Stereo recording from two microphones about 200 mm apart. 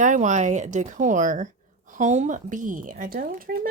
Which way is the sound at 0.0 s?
40° right (ahead or behind).